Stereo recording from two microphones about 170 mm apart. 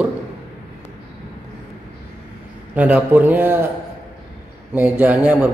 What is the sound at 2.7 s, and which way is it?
Speech, 10° right (ahead or behind).